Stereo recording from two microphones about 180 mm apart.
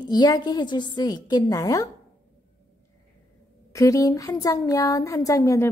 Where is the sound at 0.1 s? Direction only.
20° left (ahead or behind).